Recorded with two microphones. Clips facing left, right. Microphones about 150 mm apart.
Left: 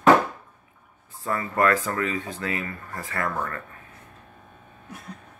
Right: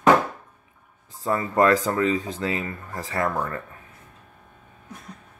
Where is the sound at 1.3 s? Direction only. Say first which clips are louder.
Right 3 dB; 20° right (ahead or behind).